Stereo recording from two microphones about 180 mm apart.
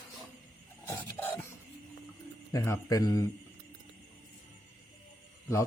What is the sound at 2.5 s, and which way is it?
Speech, 15° left (ahead or behind).